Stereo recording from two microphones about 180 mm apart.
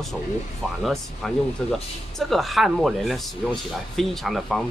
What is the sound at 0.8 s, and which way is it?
Speech, centre (ahead or behind).